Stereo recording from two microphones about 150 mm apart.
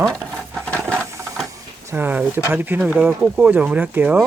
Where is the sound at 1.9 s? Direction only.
10° right (ahead or behind).